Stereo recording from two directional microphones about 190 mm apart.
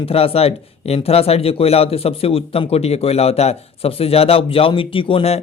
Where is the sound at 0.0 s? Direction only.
30° left (ahead or behind).